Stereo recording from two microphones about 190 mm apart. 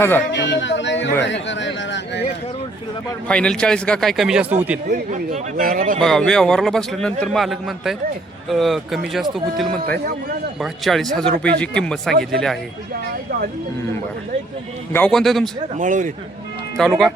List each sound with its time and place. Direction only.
0.3 s speech: 65° left (ahead or behind)
3.2 s a man's voice: 5° left (ahead or behind)
4.9 s speech: 40° right (ahead or behind)
6.0 s a man's voice: 5° left (ahead or behind)
14.9 s a man's voice: 5° left (ahead or behind)
15.8 s a man's voice: 40° right (ahead or behind)
16.7 s a man's voice: centre (ahead or behind)